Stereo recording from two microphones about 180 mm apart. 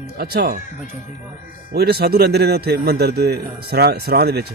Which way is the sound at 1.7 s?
60° right (ahead or behind).